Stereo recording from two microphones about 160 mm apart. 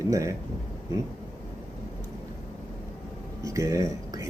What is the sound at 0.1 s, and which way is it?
Speech, 20° right (ahead or behind).